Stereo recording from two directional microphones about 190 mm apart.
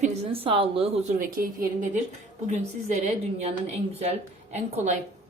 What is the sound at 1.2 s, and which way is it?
Speech, 45° right (ahead or behind).